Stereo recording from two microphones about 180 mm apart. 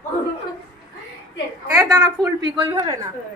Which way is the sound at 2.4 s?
20° right (ahead or behind).